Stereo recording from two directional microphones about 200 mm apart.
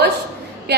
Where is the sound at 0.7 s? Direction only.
55° right (ahead or behind).